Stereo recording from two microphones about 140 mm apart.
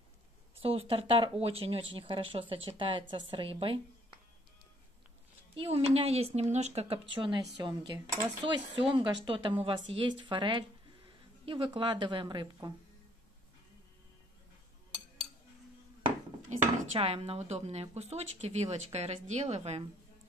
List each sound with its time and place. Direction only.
0.6 s a woman's voice: 40° right (ahead or behind)
5.6 s speech: 45° right (ahead or behind)
7.1 s a woman's voice: 35° right (ahead or behind)
16.5 s dishes: 60° right (ahead or behind)
17.0 s speech: 45° right (ahead or behind)